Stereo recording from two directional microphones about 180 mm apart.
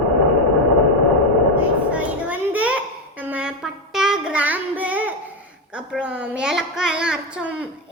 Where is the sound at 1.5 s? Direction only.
10° right (ahead or behind).